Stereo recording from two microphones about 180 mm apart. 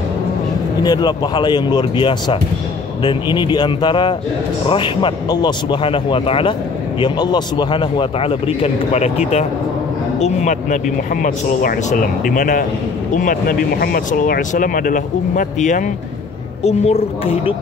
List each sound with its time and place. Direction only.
0.8 s a woman's voice: 25° left (ahead or behind)